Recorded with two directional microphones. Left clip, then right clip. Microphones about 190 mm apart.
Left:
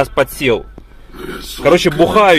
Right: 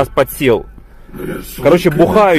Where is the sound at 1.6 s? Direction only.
10° right (ahead or behind).